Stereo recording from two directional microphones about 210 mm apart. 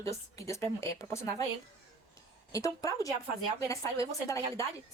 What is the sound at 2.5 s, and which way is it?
A woman's voice, 15° left (ahead or behind).